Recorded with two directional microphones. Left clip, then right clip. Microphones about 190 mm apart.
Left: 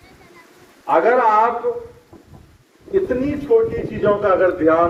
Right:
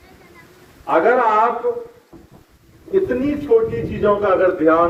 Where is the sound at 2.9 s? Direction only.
50° right (ahead or behind).